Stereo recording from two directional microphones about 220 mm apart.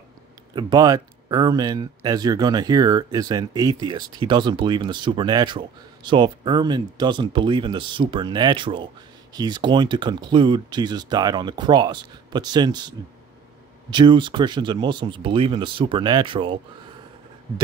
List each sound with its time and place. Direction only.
0.6 s speech: 20° right (ahead or behind)